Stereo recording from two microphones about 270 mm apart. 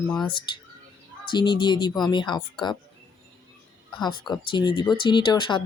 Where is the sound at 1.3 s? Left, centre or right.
Centre.